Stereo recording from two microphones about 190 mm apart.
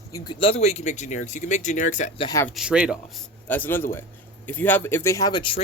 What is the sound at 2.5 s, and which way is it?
Speech, 5° right (ahead or behind).